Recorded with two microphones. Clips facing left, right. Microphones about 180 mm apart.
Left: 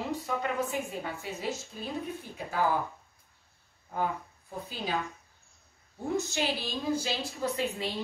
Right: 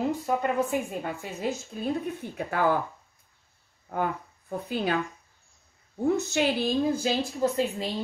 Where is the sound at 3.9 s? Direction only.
60° right (ahead or behind).